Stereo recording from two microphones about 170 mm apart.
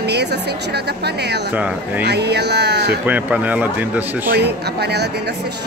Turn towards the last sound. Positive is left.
turn(degrees=-75)  # may be behind; listen again after turning